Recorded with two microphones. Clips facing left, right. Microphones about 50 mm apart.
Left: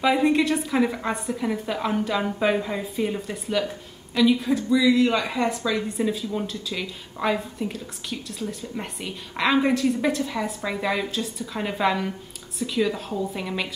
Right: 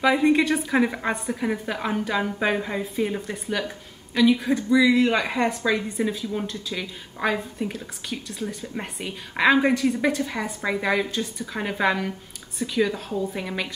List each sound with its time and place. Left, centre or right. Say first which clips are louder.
0.0 s a woman's voice: even; centre
0.7 s a woman's voice: right 1 dB; centre
4.7 s a woman's voice: right 1 dB; right; by 13.3 s centre
13.3 s a woman's voice: even; centre